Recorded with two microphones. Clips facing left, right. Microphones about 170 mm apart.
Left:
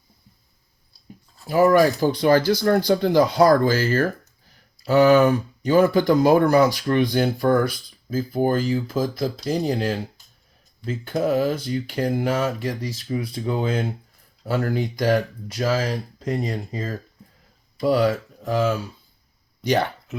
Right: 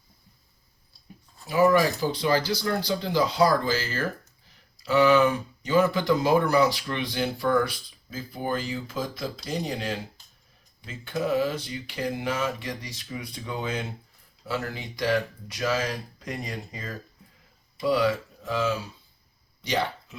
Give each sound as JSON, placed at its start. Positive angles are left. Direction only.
{"t": 1.5, "sound": "speech", "side_deg": 45}
{"t": 12.3, "sound": "speech", "side_deg": 35}
{"t": 14.4, "sound": "speech", "side_deg": 45}
{"t": 17.8, "sound": "speech", "side_deg": 45}